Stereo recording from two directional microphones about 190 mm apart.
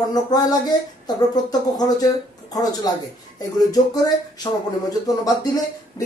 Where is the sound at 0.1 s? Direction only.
20° left (ahead or behind).